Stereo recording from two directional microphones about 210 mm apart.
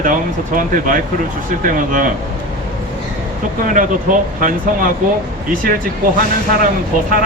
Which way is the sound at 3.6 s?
40° right (ahead or behind).